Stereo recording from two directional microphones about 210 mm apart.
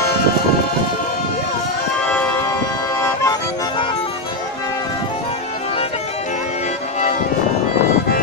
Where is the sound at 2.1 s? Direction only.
5° left (ahead or behind).